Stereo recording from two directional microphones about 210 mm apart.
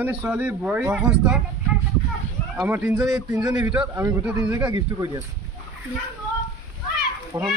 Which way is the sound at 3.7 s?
5° right (ahead or behind).